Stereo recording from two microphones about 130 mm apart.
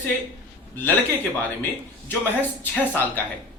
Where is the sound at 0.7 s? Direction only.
15° left (ahead or behind).